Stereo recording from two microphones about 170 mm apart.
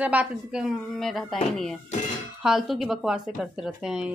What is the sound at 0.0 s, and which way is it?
A woman's voice, 10° right (ahead or behind).